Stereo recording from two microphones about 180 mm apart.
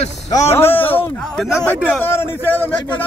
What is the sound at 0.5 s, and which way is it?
Speech, 10° left (ahead or behind).